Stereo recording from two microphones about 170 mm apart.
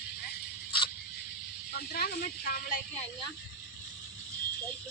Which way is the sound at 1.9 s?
60° left (ahead or behind).